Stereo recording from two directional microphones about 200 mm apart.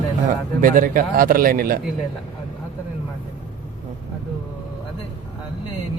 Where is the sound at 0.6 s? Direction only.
45° right (ahead or behind).